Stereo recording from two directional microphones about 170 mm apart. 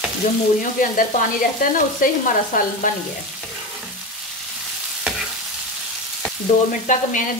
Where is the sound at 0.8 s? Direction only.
55° left (ahead or behind).